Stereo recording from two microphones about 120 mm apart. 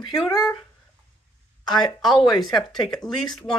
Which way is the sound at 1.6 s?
35° left (ahead or behind).